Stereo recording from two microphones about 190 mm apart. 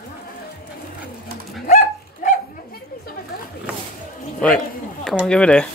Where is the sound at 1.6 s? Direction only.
45° left (ahead or behind).